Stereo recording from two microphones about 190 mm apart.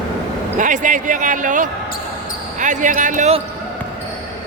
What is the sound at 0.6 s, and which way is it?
Speech, 40° right (ahead or behind).